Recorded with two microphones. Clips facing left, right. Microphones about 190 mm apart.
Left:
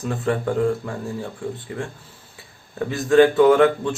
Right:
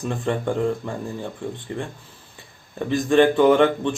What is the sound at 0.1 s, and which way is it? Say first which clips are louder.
Speech: left 2 dB; 5° left (ahead or behind).